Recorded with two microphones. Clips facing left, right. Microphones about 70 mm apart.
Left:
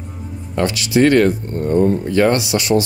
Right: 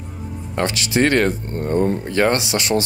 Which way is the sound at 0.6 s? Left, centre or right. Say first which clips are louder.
Left 4 dB; right.